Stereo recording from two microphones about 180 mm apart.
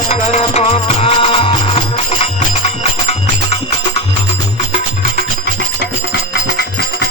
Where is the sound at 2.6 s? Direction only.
35° left (ahead or behind).